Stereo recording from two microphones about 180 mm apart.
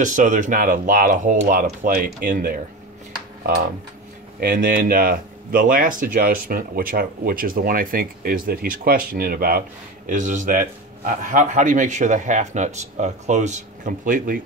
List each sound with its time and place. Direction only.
0.0 s speech: 45° right (ahead or behind)
4.4 s speech: 55° right (ahead or behind)
10.0 s speech: 45° right (ahead or behind)